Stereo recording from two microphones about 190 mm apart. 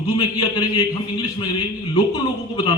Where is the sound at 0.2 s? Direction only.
20° left (ahead or behind).